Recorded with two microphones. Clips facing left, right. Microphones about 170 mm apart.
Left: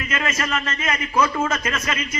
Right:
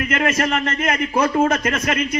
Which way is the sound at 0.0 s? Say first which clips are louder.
Right 6 dB; 60° right (ahead or behind).